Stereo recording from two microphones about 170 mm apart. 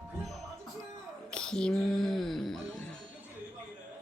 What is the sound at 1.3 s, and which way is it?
Music, 5° left (ahead or behind).